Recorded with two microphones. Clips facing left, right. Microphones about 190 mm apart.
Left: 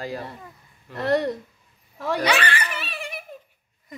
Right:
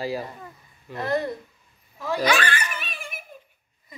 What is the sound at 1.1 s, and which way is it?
Speech, 80° left.